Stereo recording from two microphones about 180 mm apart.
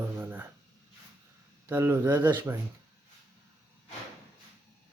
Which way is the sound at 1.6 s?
15° right (ahead or behind).